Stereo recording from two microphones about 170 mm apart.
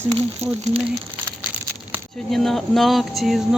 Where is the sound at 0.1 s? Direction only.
35° right (ahead or behind).